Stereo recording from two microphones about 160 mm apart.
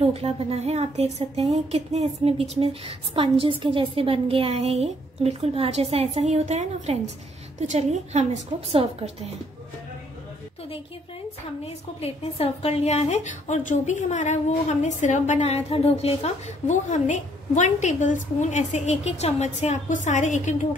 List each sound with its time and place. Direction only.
0.0 s a woman's voice: 40° right (ahead or behind)
11.6 s a woman's voice: 40° left (ahead or behind)